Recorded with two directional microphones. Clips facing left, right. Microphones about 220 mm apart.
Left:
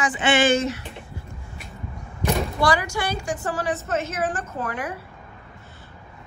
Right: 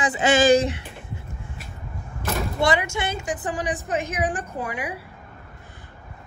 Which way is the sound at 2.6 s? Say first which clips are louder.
Right 4 dB; 25° right (ahead or behind).